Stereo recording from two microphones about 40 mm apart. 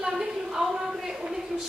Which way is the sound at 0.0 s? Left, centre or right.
Centre.